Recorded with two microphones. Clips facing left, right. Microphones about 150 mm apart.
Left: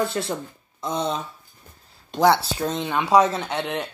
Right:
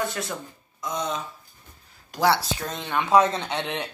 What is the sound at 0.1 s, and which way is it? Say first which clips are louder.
Speech: left 5 dB; 25° left (ahead or behind).